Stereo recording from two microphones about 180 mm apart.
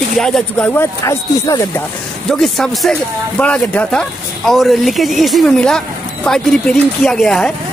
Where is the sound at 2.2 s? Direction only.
Centre (ahead or behind).